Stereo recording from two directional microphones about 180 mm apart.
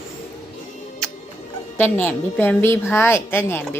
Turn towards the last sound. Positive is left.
turn(degrees=15)  # may be behind; listen again after turning